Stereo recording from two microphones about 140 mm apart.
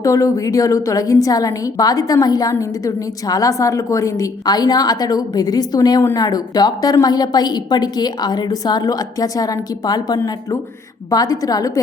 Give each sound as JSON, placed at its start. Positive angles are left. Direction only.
{"t": 0.0, "sound": "a woman's voice", "side_deg": 25}